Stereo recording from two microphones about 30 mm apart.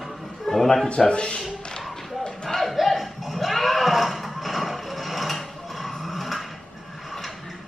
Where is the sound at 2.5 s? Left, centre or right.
Centre.